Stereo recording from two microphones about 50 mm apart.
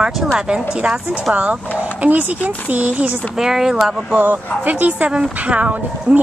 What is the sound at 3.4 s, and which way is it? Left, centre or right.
Speech, centre.